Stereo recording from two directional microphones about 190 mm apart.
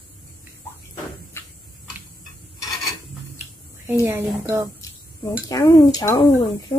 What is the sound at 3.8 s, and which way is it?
Speech, 10° right (ahead or behind).